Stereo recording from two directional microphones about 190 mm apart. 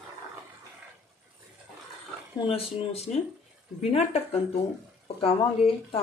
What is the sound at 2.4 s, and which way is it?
Speech, 30° left (ahead or behind).